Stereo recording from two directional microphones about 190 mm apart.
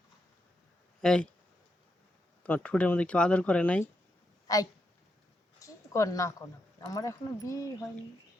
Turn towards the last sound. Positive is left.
turn(degrees=15)  # may be behind; listen again after turning